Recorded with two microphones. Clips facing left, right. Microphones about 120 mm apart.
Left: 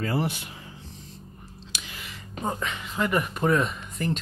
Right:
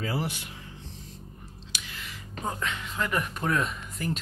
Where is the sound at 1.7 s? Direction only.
15° left (ahead or behind).